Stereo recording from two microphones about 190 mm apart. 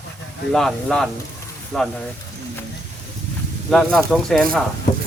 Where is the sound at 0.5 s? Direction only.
5° left (ahead or behind).